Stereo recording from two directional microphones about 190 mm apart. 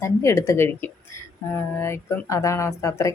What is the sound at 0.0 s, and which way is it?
A woman's voice, 15° left (ahead or behind).